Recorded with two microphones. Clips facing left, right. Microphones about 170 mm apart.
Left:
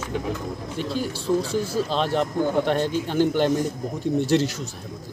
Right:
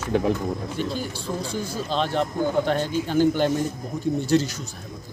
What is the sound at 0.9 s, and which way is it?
Speech, centre (ahead or behind).